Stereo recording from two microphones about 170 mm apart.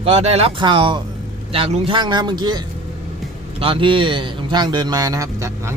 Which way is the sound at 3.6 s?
30° right (ahead or behind).